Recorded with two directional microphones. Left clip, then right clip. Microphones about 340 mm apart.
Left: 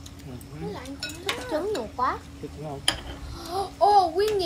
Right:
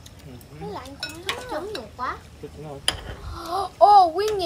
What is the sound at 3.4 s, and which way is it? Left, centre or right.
Speech, centre.